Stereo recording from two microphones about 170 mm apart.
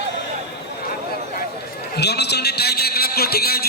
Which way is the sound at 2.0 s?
75° left (ahead or behind).